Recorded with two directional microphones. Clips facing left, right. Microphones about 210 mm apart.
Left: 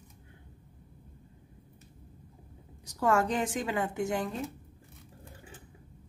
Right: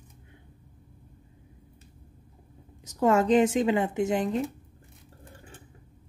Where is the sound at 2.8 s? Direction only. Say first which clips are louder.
Right 5 dB; 20° right (ahead or behind).